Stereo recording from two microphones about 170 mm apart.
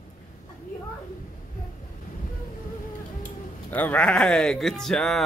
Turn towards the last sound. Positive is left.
turn(degrees=0)  # may be behind; listen again after turning